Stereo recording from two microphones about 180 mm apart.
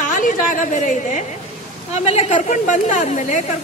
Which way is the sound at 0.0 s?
45° left (ahead or behind).